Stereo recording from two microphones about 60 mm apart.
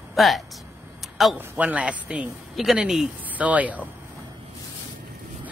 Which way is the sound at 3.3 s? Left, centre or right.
Right.